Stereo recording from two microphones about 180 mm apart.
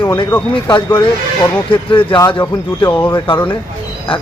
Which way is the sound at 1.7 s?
30° left (ahead or behind).